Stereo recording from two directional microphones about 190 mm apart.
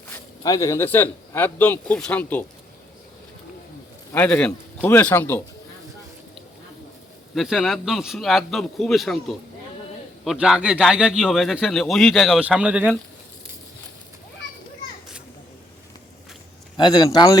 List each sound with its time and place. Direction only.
0.1 s a man's voice: 15° left (ahead or behind)
4.1 s a man's voice: 5° left (ahead or behind)
7.3 s speech: centre (ahead or behind)
10.2 s speech: centre (ahead or behind)
16.7 s speech: 20° left (ahead or behind)